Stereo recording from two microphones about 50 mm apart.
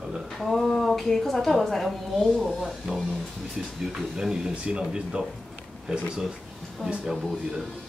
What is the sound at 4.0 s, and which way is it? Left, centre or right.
Speech, centre.